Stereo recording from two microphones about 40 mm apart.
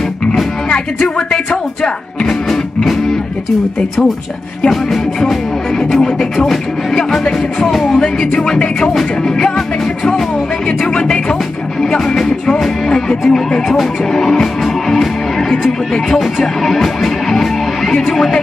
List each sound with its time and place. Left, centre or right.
2.8 s music: centre
5.9 s music: centre
8.5 s music: left
11.0 s music: left
16.6 s music: centre